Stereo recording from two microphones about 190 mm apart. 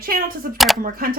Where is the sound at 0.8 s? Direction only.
50° right (ahead or behind).